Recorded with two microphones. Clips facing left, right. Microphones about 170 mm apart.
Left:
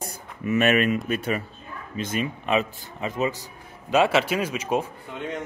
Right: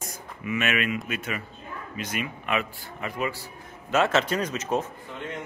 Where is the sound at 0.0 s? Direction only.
40° left (ahead or behind).